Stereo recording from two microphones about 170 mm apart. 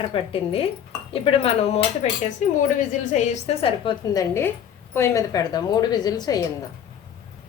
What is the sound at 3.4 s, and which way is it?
Speech, 30° left (ahead or behind).